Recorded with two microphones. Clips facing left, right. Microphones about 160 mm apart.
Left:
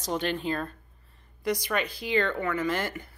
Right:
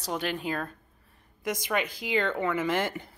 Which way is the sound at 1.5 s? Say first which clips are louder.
Left 1 dB; 20° right (ahead or behind).